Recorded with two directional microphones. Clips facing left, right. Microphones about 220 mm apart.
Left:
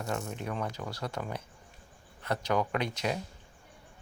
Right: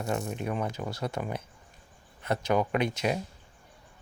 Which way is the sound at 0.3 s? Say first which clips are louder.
Right 4 dB; 15° right (ahead or behind).